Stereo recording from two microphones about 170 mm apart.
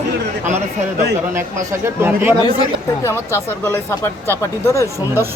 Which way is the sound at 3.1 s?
15° left (ahead or behind).